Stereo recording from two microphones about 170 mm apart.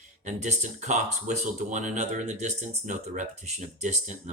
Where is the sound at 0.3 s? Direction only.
45° right (ahead or behind).